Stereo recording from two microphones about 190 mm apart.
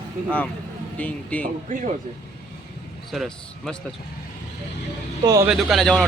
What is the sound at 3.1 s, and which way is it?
Speech, centre (ahead or behind).